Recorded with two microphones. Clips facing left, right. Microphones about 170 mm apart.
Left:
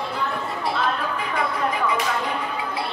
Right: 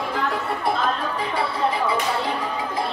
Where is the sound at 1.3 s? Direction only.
30° right (ahead or behind).